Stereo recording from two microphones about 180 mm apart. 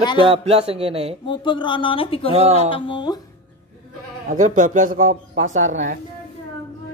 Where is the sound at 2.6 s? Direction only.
30° left (ahead or behind).